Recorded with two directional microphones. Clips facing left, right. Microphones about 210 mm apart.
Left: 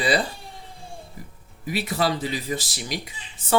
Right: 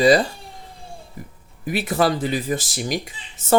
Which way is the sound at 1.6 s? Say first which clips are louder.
Right 4 dB; 50° right (ahead or behind).